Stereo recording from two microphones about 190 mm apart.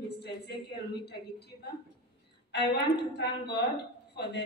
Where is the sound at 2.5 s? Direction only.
65° left (ahead or behind).